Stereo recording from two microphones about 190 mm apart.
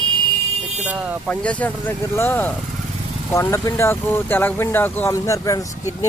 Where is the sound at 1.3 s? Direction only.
5° left (ahead or behind).